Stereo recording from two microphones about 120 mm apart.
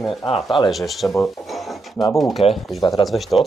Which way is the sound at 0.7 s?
Centre (ahead or behind).